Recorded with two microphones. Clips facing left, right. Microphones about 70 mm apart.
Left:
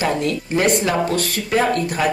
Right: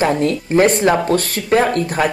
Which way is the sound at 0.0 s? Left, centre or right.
Right.